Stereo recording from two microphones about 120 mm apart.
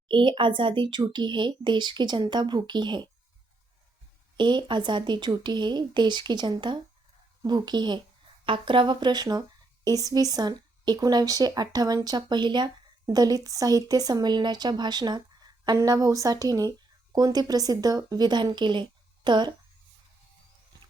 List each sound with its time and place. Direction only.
0.1 s speech: 45° right (ahead or behind)
4.4 s speech: 40° right (ahead or behind)